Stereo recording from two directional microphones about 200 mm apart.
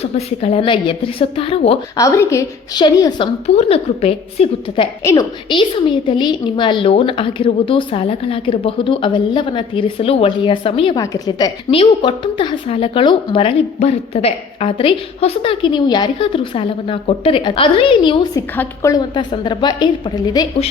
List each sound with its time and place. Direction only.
0.0 s a woman's voice: 30° left (ahead or behind)
2.0 s a woman's voice: 15° left (ahead or behind)
3.4 s a woman's voice: 35° left (ahead or behind)
18.5 s a woman's voice: 10° left (ahead or behind)